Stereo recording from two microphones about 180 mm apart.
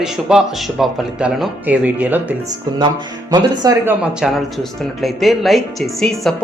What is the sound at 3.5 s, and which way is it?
Speech, 20° right (ahead or behind).